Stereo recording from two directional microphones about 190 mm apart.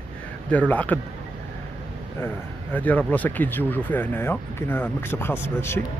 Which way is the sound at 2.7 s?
10° left (ahead or behind).